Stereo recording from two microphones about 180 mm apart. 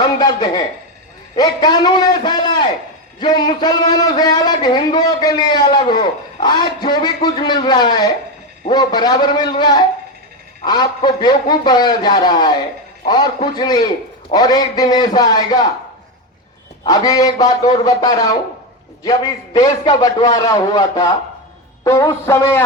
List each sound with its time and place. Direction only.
0.0 s a sound: 25° left (ahead or behind)
1.4 s a man's voice: 20° left (ahead or behind)
16.8 s a man's voice: 20° left (ahead or behind)
21.8 s music: 15° left (ahead or behind)